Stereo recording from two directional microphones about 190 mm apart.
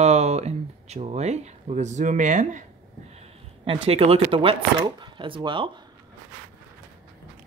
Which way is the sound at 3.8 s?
30° right (ahead or behind).